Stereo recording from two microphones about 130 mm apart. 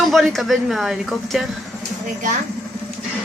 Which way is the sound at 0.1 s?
Centre (ahead or behind).